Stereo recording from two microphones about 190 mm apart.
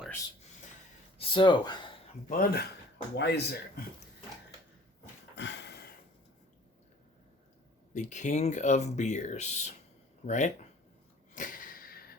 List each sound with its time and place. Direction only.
1.2 s speech: 25° left (ahead or behind)
2.3 s speech: 50° left (ahead or behind)
3.2 s speech: 60° left (ahead or behind)
5.4 s a sound: 65° left (ahead or behind)
7.9 s speech: 40° left (ahead or behind)
11.3 s a sound: 45° left (ahead or behind)